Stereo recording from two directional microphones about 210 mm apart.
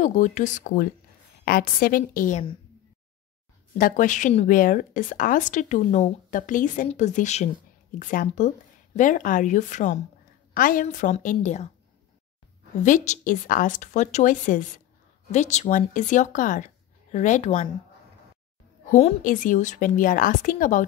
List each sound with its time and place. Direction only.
0.0 s a woman's voice: 35° left (ahead or behind)
3.7 s speech: 40° left (ahead or behind)
12.8 s speech: 35° left (ahead or behind)
18.9 s speech: 35° left (ahead or behind)